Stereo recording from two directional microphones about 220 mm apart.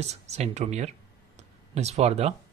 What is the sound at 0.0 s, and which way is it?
Speech, 30° right (ahead or behind).